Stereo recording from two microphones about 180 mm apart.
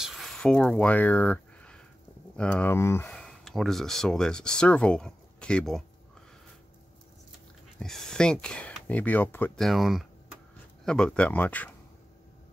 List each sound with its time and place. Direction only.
0.0 s a sound: centre (ahead or behind)
2.3 s speech: 5° left (ahead or behind)
7.8 s speech: 5° left (ahead or behind)